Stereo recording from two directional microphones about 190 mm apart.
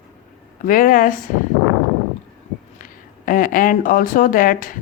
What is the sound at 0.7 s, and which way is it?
Speech, 45° left (ahead or behind).